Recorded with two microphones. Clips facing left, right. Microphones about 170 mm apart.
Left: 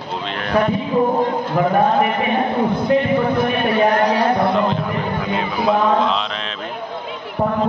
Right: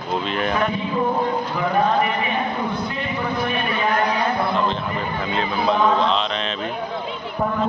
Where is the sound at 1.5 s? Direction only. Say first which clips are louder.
Left 5 dB; 50° left (ahead or behind).